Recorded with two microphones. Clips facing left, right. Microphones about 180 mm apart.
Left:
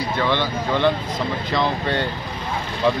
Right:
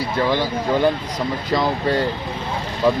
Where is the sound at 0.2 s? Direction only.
35° right (ahead or behind).